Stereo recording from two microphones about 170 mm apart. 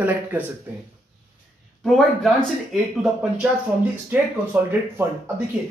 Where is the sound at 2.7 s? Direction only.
Centre (ahead or behind).